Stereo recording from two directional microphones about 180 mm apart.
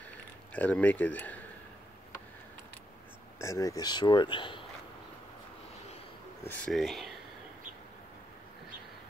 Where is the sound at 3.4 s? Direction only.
15° left (ahead or behind).